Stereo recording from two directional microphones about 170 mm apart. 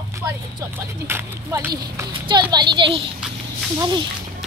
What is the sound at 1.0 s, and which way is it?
A child's voice, 15° right (ahead or behind).